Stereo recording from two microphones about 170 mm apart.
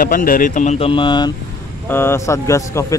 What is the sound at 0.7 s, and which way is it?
Speech, 30° left (ahead or behind).